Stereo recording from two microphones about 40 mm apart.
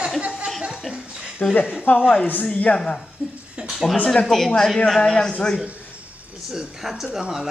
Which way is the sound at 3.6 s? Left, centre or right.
Centre.